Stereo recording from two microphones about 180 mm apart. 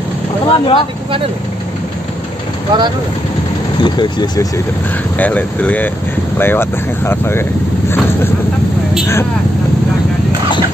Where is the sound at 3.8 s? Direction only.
25° left (ahead or behind).